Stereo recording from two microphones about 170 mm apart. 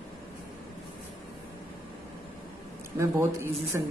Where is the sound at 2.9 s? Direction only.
15° right (ahead or behind).